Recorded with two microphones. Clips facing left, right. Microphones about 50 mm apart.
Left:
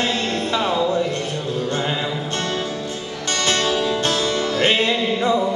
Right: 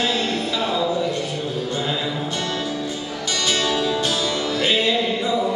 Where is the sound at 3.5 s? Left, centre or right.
Left.